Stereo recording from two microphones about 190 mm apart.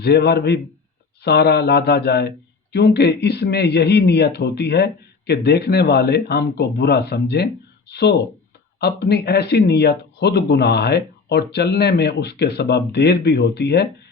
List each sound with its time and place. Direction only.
0.0 s speech: 60° left (ahead or behind)